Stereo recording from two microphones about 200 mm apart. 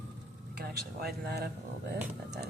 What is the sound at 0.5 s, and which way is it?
Speech, 50° right (ahead or behind).